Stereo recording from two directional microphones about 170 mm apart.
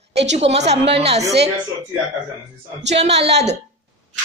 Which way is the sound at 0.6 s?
40° right (ahead or behind).